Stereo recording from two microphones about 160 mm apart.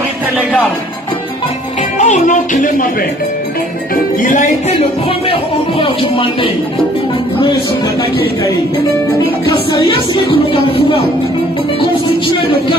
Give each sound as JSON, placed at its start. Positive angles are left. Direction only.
{"t": 2.0, "sound": "speech", "side_deg": 45}
{"t": 3.9, "sound": "music", "side_deg": 60}
{"t": 5.3, "sound": "music", "side_deg": 35}
{"t": 9.5, "sound": "music", "side_deg": 30}